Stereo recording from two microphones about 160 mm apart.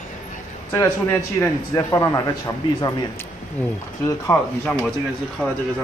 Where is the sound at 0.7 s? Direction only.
15° left (ahead or behind).